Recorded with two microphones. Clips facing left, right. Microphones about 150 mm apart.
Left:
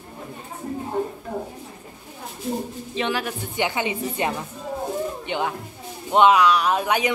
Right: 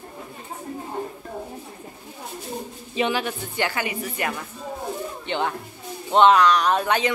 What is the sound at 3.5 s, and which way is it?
Speech, 20° left (ahead or behind).